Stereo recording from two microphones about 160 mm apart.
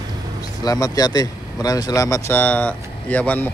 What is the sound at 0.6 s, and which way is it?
Speech, 20° left (ahead or behind).